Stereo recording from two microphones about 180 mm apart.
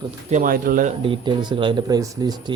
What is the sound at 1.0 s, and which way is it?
Speech, 25° right (ahead or behind).